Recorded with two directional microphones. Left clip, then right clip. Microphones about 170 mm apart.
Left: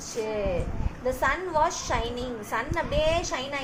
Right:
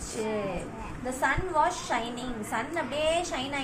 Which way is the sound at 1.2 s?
40° left (ahead or behind).